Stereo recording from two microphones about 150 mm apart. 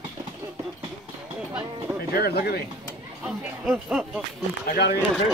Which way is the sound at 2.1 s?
90° left.